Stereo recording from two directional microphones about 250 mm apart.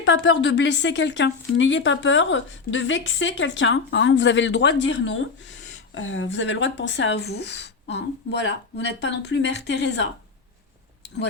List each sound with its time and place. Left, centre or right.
0.0 s speech: left